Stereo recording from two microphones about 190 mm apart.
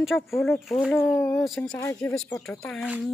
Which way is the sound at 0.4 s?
Centre (ahead or behind).